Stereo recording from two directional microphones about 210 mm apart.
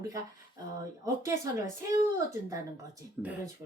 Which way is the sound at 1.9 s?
15° right (ahead or behind).